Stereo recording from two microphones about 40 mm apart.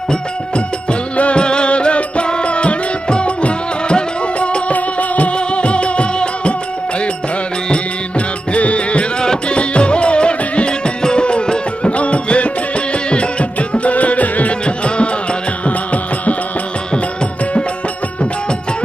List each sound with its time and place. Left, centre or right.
1.1 s music: left
8.5 s music: left
14.5 s music: left
16.9 s music: left